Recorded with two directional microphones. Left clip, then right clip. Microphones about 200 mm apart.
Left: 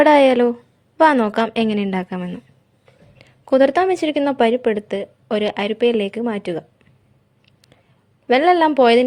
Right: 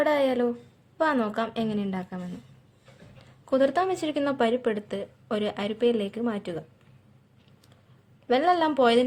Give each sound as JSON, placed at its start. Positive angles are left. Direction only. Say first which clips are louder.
{"t": 0.0, "sound": "speech", "louder": "left 11 dB", "side_deg": 45}
{"t": 8.3, "sound": "speech", "louder": "left 8 dB", "side_deg": 35}